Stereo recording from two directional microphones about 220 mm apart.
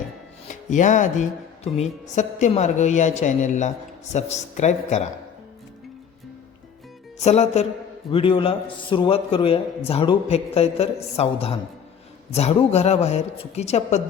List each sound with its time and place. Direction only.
0.7 s a woman's voice: 35° left (ahead or behind)
7.2 s a man's voice: 30° left (ahead or behind)